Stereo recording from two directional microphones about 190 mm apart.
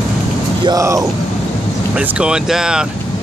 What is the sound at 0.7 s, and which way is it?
Speech, 15° right (ahead or behind).